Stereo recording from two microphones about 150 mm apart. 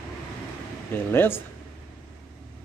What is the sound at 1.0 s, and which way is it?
Speech, 15° left (ahead or behind).